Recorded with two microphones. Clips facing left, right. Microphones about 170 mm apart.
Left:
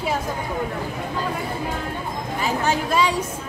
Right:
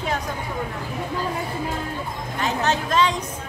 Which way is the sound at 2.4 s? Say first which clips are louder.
Even; 10° left (ahead or behind).